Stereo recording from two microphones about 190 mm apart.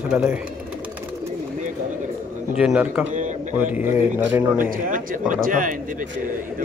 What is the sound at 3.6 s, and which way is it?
A man's voice, 10° right (ahead or behind).